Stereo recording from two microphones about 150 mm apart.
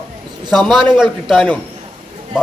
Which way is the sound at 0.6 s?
Centre (ahead or behind).